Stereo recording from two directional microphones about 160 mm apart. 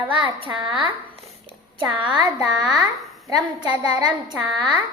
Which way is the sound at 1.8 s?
25° right (ahead or behind).